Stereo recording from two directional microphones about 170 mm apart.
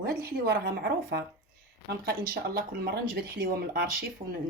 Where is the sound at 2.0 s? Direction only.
60° right (ahead or behind).